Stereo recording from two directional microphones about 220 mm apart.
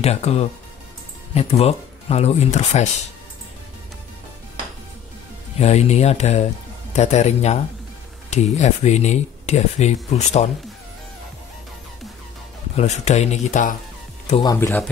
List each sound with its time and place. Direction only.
0.0 s speech: 30° left (ahead or behind)
5.6 s speech: 30° left (ahead or behind)
12.7 s speech: 30° left (ahead or behind)
14.4 s speech: 15° left (ahead or behind)